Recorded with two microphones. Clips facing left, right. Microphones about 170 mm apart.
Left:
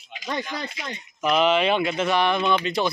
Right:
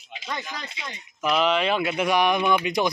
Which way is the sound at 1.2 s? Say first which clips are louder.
Left 2 dB; centre (ahead or behind).